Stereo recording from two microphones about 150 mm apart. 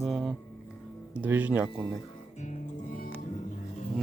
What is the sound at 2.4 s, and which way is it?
Music, 60° left (ahead or behind).